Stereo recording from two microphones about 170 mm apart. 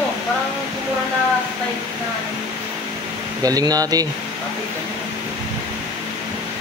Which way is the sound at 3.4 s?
20° right (ahead or behind).